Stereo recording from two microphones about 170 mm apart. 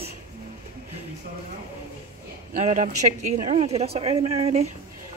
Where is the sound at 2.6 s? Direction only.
45° right (ahead or behind).